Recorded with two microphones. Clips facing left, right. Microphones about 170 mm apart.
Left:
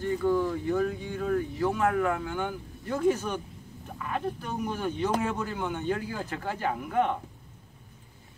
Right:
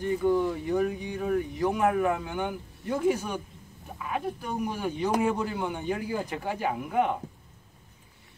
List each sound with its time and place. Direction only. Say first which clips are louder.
0.0 s speech: right 1 dB; 15° right (ahead or behind)